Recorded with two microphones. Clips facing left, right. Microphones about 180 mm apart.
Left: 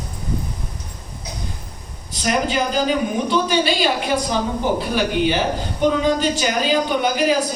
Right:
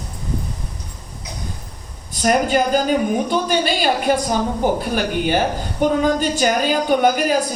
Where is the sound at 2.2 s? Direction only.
45° right (ahead or behind).